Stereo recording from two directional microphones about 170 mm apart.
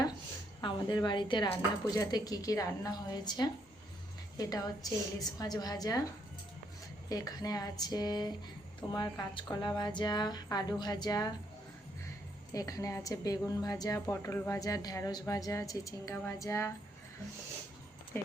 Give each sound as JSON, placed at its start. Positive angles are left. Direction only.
{"t": 0.6, "sound": "a woman's voice", "side_deg": 25}
{"t": 7.1, "sound": "a woman's voice", "side_deg": 20}
{"t": 12.5, "sound": "a woman's voice", "side_deg": 20}